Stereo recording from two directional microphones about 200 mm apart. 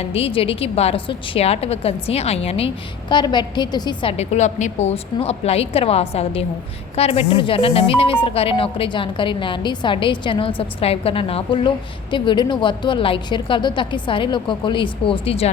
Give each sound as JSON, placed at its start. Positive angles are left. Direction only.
{"t": 0.0, "sound": "a woman's voice", "side_deg": 30}